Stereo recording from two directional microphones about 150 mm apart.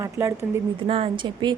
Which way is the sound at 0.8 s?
40° right (ahead or behind).